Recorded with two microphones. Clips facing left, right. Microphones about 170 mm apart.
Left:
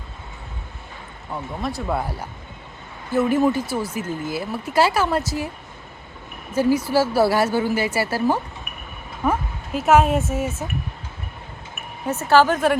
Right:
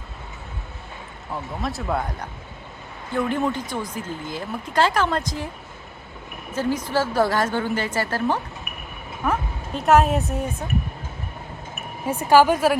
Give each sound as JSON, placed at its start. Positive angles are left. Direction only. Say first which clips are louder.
{"t": 1.3, "sound": "speech", "louder": "left 1 dB", "side_deg": 0}
{"t": 6.5, "sound": "speech", "louder": "left 5 dB", "side_deg": 10}
{"t": 12.0, "sound": "speech", "louder": "right 1 dB", "side_deg": -10}